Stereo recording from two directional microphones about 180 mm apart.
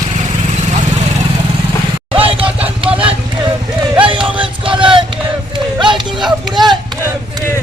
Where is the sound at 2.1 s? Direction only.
30° right (ahead or behind).